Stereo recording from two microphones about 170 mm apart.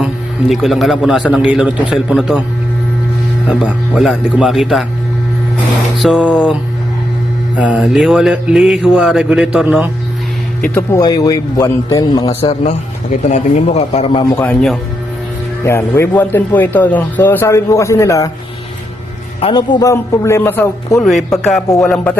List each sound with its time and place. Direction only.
0.0 s a man's voice: centre (ahead or behind)
3.5 s a man's voice: 5° right (ahead or behind)
6.0 s a man's voice: 5° right (ahead or behind)
7.6 s a man's voice: 5° right (ahead or behind)
10.6 s a man's voice: 15° left (ahead or behind)
12.3 s a man's voice: 35° left (ahead or behind)
15.6 s a man's voice: 15° left (ahead or behind)
19.4 s a man's voice: 30° left (ahead or behind); by 21.0 s 15° left (ahead or behind)
21.2 s a man's voice: centre (ahead or behind)